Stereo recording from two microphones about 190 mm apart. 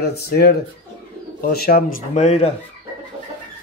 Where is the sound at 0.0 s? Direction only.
55° left (ahead or behind); by 2.5 s 35° left (ahead or behind).